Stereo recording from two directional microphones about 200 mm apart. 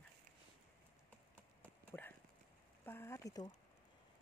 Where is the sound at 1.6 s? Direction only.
10° left (ahead or behind).